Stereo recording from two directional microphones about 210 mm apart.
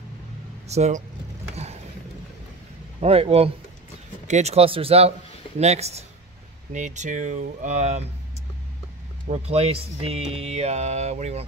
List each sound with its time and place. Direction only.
0.7 s speech: 30° right (ahead or behind)
3.0 s a man's voice: 30° right (ahead or behind)
9.3 s speech: 30° right (ahead or behind)